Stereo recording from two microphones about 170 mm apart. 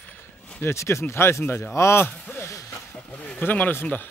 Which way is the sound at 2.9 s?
5° left (ahead or behind).